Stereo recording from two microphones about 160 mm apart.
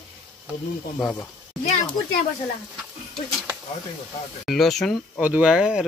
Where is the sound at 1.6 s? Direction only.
45° left (ahead or behind).